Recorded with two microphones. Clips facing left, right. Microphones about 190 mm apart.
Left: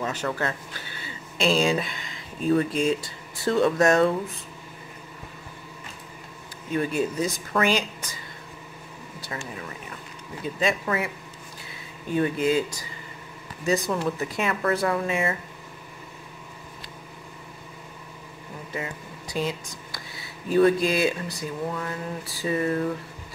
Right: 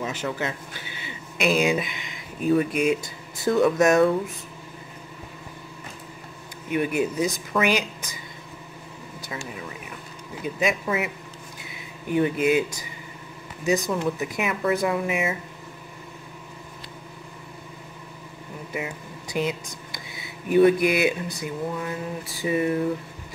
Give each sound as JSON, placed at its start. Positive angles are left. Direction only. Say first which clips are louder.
{"t": 0.0, "sound": "speech", "louder": "even", "side_deg": -15}
{"t": 6.7, "sound": "speech", "louder": "right 1 dB", "side_deg": -15}
{"t": 9.2, "sound": "speech", "louder": "even", "side_deg": -10}
{"t": 12.1, "sound": "speech", "louder": "right 2 dB", "side_deg": -20}
{"t": 13.7, "sound": "speech", "louder": "right 1 dB", "side_deg": -15}
{"t": 19.3, "sound": "speech", "louder": "right 2 dB", "side_deg": -20}